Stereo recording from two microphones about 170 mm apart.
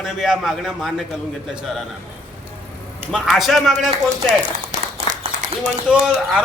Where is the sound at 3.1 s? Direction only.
5° right (ahead or behind).